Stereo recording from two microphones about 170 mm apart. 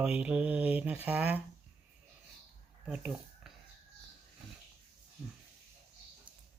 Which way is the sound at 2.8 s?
5° right (ahead or behind).